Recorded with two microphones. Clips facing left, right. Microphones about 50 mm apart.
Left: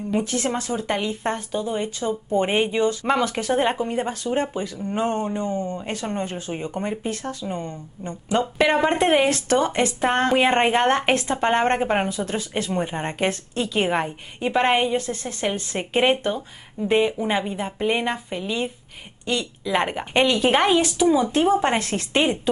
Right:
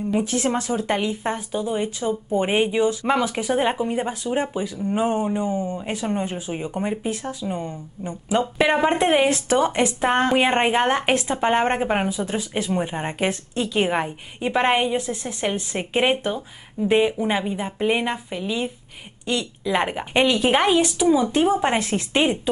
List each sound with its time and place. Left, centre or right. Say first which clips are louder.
0.3 s speech: right 2 dB; centre
0.6 s speech: right 2 dB; right
0.8 s speech: right 1 dB; centre
19.7 s speech: even; centre